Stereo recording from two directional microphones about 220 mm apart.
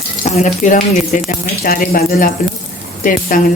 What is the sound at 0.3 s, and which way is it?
A woman's voice, 30° left (ahead or behind).